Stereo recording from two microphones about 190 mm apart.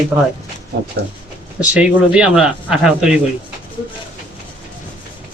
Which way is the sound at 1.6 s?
5° right (ahead or behind).